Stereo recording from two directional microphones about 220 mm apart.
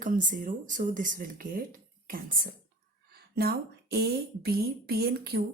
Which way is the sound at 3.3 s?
45° right (ahead or behind).